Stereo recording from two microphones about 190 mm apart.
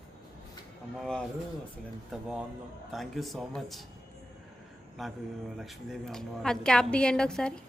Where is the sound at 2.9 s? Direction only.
Centre (ahead or behind).